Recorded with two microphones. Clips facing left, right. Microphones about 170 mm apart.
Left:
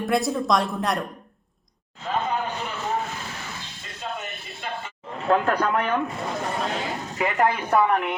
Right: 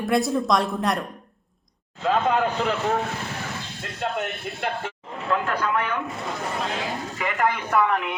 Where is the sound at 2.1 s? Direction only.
90° right.